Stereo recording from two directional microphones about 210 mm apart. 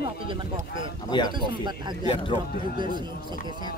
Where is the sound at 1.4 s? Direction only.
20° right (ahead or behind).